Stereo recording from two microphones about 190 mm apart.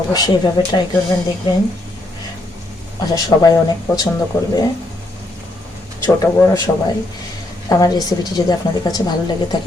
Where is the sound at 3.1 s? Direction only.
20° left (ahead or behind).